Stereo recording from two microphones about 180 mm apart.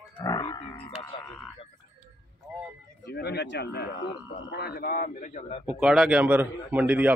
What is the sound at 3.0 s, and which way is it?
A man's voice, 65° left (ahead or behind).